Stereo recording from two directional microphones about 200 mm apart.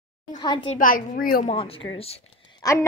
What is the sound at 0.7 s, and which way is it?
Speech, 45° left (ahead or behind).